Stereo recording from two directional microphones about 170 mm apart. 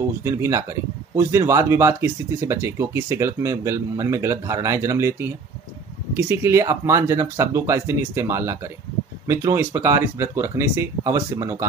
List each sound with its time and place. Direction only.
0.2 s speech: 15° right (ahead or behind)